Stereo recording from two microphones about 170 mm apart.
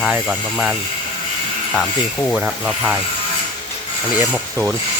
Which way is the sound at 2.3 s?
5° right (ahead or behind).